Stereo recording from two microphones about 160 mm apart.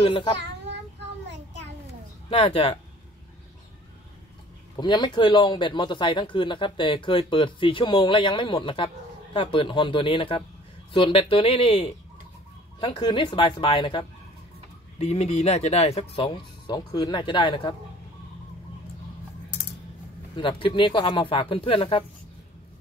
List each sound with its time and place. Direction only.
0.0 s speech: 30° left (ahead or behind)
2.2 s speech: 35° left (ahead or behind)
4.7 s speech: 30° left (ahead or behind)
15.0 s speech: 45° left (ahead or behind); by 17.7 s 30° left (ahead or behind)
20.3 s speech: 30° left (ahead or behind)